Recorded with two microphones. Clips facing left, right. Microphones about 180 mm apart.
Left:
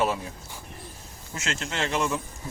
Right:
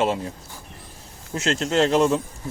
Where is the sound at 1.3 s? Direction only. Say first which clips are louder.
Right 10 dB; 35° right (ahead or behind).